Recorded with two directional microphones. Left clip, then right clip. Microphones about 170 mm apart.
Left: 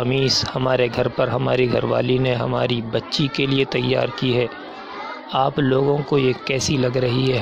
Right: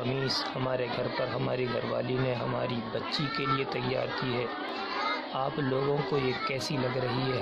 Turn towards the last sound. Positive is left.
turn(degrees=45)  # may be behind; listen again after turning